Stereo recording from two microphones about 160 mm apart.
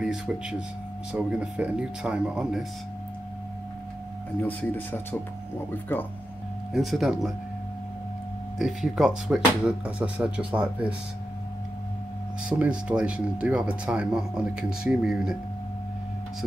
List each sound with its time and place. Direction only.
0.0 s speech: 5° right (ahead or behind)
4.4 s speech: 10° left (ahead or behind)
6.7 s speech: centre (ahead or behind)
8.5 s speech: 5° right (ahead or behind)
12.4 s speech: 10° right (ahead or behind)